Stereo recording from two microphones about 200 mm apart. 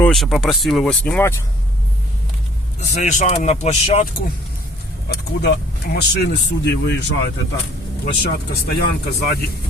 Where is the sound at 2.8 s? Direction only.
35° left (ahead or behind).